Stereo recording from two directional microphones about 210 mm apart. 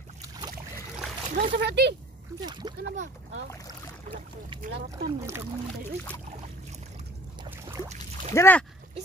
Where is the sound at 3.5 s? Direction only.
15° left (ahead or behind).